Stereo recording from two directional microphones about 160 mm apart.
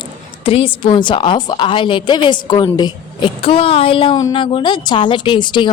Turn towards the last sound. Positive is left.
turn(degrees=30)  # may be behind; listen again after turning